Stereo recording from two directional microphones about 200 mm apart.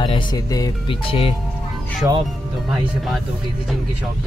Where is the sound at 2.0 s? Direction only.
10° right (ahead or behind).